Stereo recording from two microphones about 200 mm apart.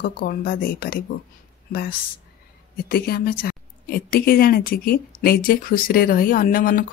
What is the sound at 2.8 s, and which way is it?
A woman's voice, 50° left (ahead or behind).